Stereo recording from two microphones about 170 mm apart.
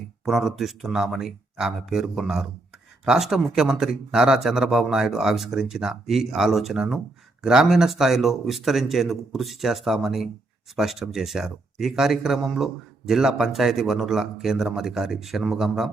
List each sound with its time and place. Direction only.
0.3 s speech: centre (ahead or behind)